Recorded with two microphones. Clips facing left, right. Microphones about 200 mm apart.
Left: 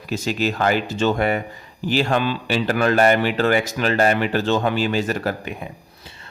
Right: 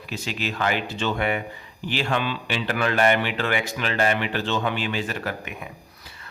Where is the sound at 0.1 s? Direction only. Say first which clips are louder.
Left 8 dB; 45° left (ahead or behind).